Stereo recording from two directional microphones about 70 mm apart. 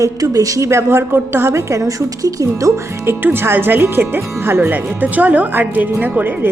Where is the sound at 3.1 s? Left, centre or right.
Right.